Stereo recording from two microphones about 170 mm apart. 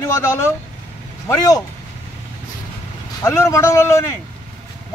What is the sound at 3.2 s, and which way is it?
Speech, 15° left (ahead or behind).